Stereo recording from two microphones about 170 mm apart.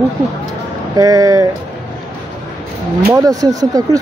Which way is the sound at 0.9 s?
20° right (ahead or behind).